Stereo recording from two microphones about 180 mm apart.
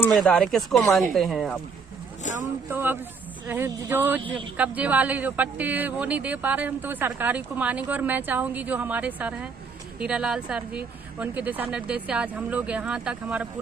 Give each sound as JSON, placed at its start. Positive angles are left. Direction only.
{"t": 0.1, "sound": "speech", "side_deg": 5}
{"t": 2.6, "sound": "speech", "side_deg": -10}
{"t": 4.2, "sound": "speech", "side_deg": -30}
{"t": 4.5, "sound": "speech", "side_deg": -10}